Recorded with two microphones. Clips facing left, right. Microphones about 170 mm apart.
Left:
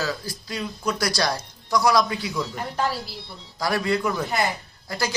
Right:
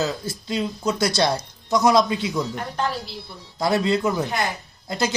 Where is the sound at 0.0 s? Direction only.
25° right (ahead or behind).